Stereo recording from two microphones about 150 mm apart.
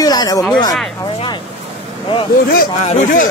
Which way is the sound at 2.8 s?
55° left (ahead or behind).